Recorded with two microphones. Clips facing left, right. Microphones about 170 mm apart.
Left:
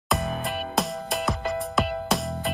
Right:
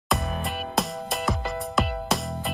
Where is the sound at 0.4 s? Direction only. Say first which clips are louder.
Left 1 dB; centre (ahead or behind).